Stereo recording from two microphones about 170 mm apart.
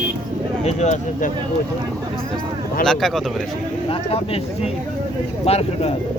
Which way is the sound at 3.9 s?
35° left (ahead or behind).